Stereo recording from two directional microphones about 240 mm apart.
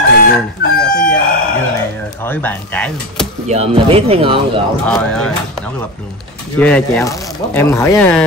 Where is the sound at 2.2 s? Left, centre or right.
Centre.